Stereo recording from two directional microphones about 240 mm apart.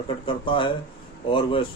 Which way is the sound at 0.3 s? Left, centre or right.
Left.